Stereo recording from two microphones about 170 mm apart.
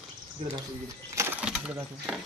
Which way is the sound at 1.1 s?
10° right (ahead or behind).